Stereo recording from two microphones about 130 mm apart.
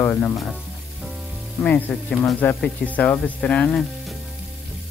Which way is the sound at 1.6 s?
10° left (ahead or behind).